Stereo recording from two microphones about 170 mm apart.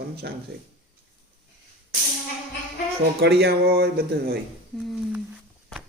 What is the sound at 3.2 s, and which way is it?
Speech, 70° right (ahead or behind).